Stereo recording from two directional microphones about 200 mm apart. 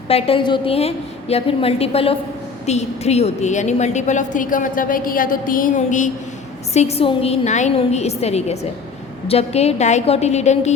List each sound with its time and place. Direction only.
0.1 s a woman's voice: 30° left (ahead or behind)